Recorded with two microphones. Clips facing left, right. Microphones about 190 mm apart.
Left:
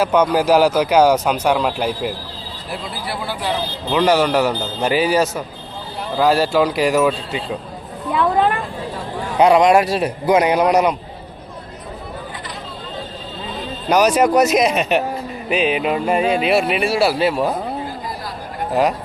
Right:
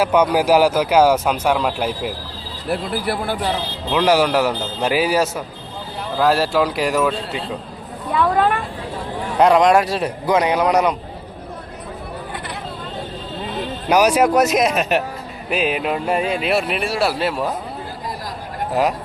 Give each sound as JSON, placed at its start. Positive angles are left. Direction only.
{"t": 0.0, "sound": "speech", "side_deg": -10}
{"t": 2.6, "sound": "speech", "side_deg": -55}
{"t": 3.8, "sound": "speech", "side_deg": -5}
{"t": 9.4, "sound": "a man's voice", "side_deg": 0}
{"t": 13.8, "sound": "speech", "side_deg": -5}
{"t": 18.7, "sound": "speech", "side_deg": 0}